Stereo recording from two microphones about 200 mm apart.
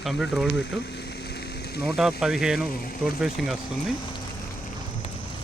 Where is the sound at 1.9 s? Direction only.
Centre (ahead or behind).